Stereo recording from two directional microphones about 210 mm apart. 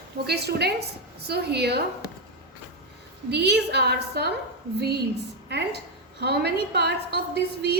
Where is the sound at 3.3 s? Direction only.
50° right (ahead or behind).